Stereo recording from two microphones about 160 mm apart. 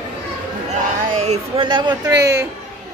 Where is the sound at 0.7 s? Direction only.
45° right (ahead or behind).